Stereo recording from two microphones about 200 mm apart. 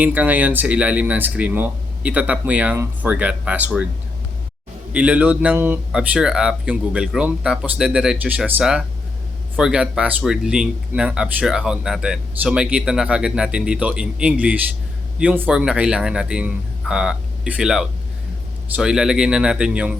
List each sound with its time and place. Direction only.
0.0 s speech: 10° right (ahead or behind)
4.9 s speech: 5° right (ahead or behind)